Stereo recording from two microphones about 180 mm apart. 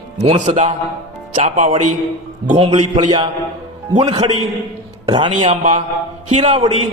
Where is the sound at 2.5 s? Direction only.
30° right (ahead or behind).